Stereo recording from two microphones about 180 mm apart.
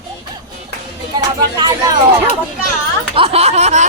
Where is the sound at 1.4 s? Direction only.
25° right (ahead or behind).